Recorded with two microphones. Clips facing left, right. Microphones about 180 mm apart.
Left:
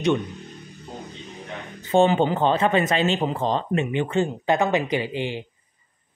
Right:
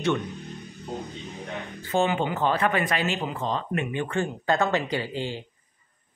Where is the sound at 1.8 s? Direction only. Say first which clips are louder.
Left 6 dB; 25° left (ahead or behind).